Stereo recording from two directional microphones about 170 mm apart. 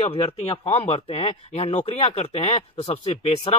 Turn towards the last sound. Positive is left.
turn(degrees=35)  # may be behind; listen again after turning